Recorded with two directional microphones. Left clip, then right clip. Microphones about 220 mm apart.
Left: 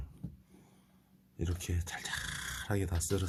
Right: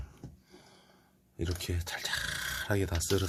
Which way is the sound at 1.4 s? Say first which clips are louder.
Right 4 dB; 40° right (ahead or behind).